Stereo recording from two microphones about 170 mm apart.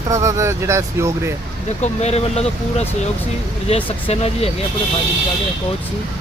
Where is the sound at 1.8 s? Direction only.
40° left (ahead or behind).